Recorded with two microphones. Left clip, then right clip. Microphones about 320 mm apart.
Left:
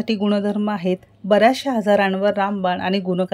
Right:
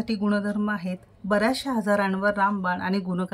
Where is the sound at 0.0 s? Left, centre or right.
Centre.